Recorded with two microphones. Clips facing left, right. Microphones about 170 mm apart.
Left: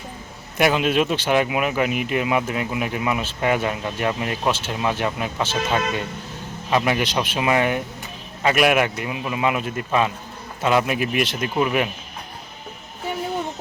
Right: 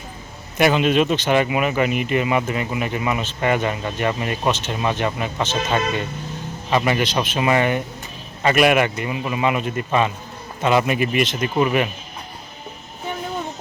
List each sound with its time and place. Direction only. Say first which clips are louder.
0.5 s speech: right 2 dB; 5° left (ahead or behind)